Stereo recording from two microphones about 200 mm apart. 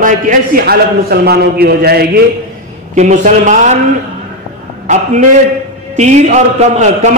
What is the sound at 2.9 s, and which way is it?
Speech, 35° right (ahead or behind).